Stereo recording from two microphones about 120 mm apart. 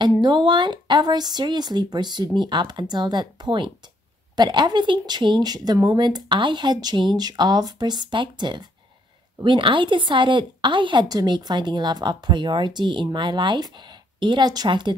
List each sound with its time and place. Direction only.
0.0 s a woman's voice: 40° right (ahead or behind)